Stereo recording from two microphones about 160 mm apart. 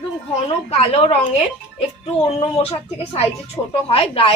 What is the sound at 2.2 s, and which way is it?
Speech, 35° left (ahead or behind).